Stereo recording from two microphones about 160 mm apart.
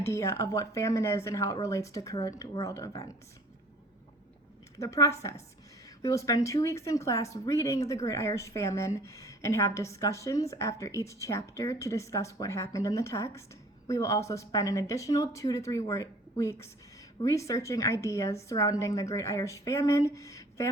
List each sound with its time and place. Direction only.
0.0 s speech: 15° left (ahead or behind)
4.8 s speech: 20° left (ahead or behind)